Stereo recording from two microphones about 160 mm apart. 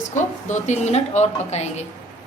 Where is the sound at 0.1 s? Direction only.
50° left (ahead or behind).